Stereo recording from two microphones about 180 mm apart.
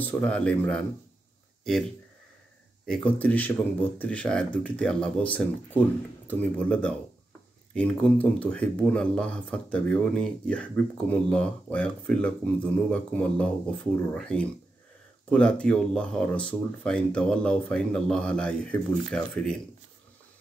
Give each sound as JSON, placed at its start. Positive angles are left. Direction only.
{"t": 0.0, "sound": "speech", "side_deg": 10}
{"t": 2.9, "sound": "speech", "side_deg": 5}